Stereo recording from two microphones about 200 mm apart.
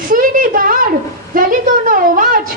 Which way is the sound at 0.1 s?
45° right (ahead or behind).